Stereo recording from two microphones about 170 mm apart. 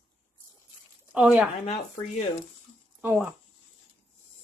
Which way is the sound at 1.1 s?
5° right (ahead or behind).